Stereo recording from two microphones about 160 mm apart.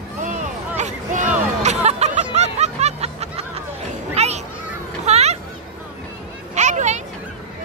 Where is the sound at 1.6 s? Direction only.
45° right (ahead or behind).